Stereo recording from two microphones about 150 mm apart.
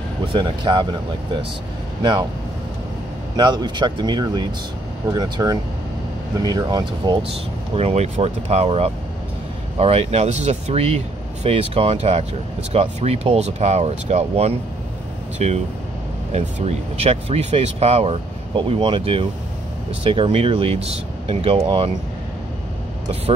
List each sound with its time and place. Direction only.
0.3 s speech: 30° right (ahead or behind)
3.3 s speech: 30° right (ahead or behind)
7.7 s speech: 45° right (ahead or behind)